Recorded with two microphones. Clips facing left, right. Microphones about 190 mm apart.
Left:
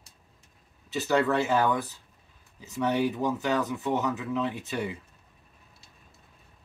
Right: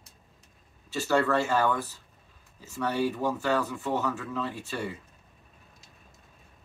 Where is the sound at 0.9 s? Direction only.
20° left (ahead or behind).